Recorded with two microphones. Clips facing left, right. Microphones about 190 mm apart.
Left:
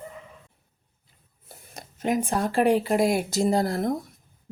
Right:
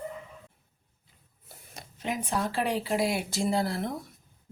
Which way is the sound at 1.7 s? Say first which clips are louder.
Left 8 dB; 45° left (ahead or behind).